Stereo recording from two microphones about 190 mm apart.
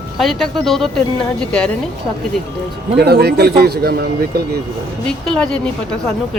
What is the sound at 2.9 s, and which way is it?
A man's voice, 60° right (ahead or behind).